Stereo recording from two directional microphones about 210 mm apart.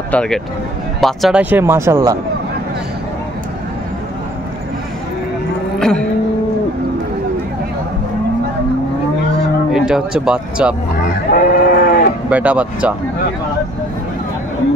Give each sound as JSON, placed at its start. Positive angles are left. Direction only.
{"t": 0.1, "sound": "speech", "side_deg": 5}
{"t": 5.8, "sound": "vehicle", "side_deg": 5}
{"t": 9.7, "sound": "speech", "side_deg": 0}
{"t": 11.3, "sound": "sheep", "side_deg": 45}
{"t": 12.3, "sound": "speech", "side_deg": -5}